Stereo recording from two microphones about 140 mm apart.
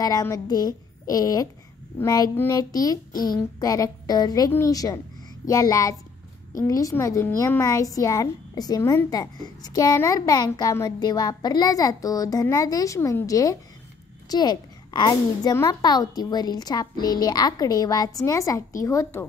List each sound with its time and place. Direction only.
0.0 s a woman's voice: 25° left (ahead or behind)